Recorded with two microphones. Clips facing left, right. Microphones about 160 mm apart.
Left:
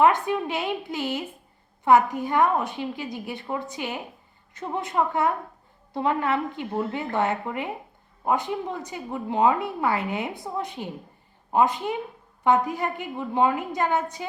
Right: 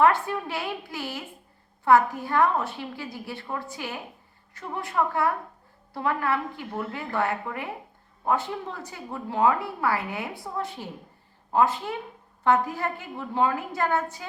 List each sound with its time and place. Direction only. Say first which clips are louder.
0.0 s a woman's voice: left 1 dB; 20° left (ahead or behind)